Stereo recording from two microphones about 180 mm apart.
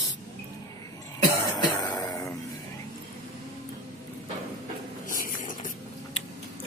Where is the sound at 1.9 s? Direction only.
20° left (ahead or behind).